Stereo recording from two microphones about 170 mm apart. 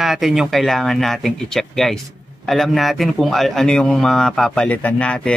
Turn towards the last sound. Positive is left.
turn(degrees=5)  # may be behind; listen again after turning